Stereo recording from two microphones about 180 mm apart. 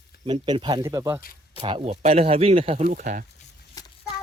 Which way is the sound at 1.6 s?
30° right (ahead or behind).